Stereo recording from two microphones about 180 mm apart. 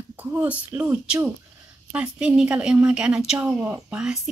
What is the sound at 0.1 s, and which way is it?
A woman's voice, 10° right (ahead or behind).